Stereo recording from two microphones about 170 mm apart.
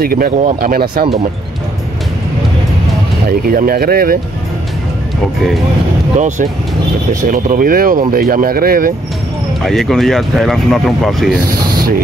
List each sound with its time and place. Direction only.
0.0 s speech: 60° right (ahead or behind)
3.3 s speech: 60° right (ahead or behind)
6.1 s speech: 45° right (ahead or behind)
9.6 s speech: centre (ahead or behind)